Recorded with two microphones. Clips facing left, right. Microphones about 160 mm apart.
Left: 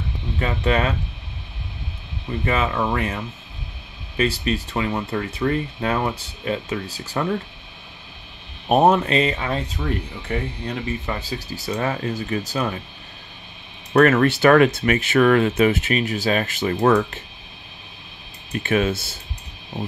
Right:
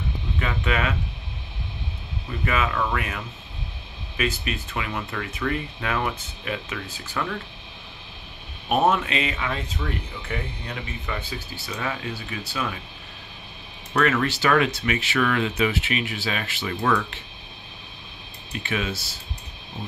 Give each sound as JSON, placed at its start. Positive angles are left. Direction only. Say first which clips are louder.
{"t": 0.4, "sound": "speech", "louder": "left 5 dB", "side_deg": 35}
{"t": 2.4, "sound": "speech", "louder": "left 3 dB", "side_deg": 30}
{"t": 4.2, "sound": "speech", "louder": "left 6 dB", "side_deg": 35}
{"t": 8.6, "sound": "speech", "louder": "left 5 dB", "side_deg": 40}
{"t": 11.1, "sound": "speech", "louder": "left 4 dB", "side_deg": 40}
{"t": 13.9, "sound": "speech", "louder": "left 7 dB", "side_deg": 50}
{"t": 18.5, "sound": "speech", "louder": "left 8 dB", "side_deg": 50}